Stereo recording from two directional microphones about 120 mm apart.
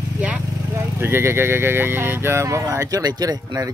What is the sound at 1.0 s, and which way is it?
Speech, 20° right (ahead or behind).